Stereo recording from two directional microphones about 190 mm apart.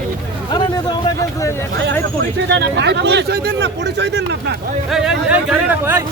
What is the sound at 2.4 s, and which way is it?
Speech, 65° right (ahead or behind).